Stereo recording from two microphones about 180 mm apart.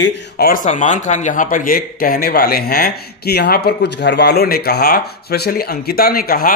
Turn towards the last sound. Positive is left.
turn(degrees=55)  # may be behind; listen again after turning